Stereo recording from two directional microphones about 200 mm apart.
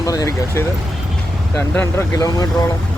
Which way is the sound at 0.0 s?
15° left (ahead or behind).